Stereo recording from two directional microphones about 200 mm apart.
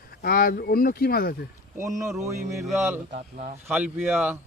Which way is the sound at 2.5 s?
15° right (ahead or behind).